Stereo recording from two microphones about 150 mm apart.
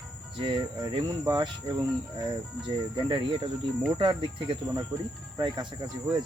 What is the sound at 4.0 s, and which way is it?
Speech, 30° right (ahead or behind).